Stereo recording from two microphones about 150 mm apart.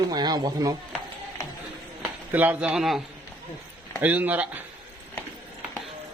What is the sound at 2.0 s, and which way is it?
Speech, 10° right (ahead or behind).